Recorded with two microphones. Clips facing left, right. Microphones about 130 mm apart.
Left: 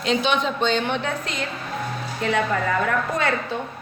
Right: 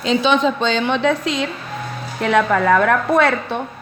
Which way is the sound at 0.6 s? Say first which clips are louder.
Right 5 dB; 90° right.